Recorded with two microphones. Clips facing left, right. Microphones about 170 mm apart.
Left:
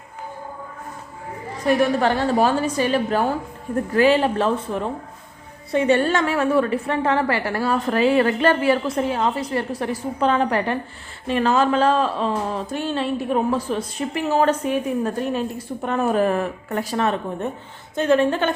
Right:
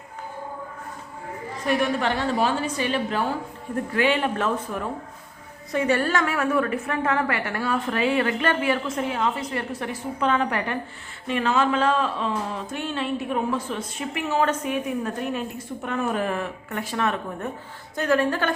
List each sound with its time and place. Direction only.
1.6 s a woman's voice: 40° left (ahead or behind); by 18.5 s 20° left (ahead or behind)